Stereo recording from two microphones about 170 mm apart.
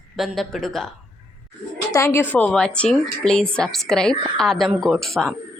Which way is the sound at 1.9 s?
15° left (ahead or behind).